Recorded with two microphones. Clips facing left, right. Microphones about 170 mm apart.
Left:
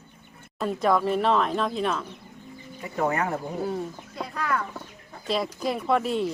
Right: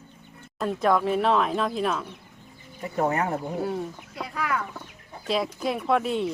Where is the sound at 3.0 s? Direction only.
20° right (ahead or behind).